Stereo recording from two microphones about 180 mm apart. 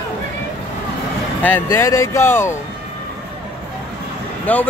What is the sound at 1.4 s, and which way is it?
Speech, 10° left (ahead or behind).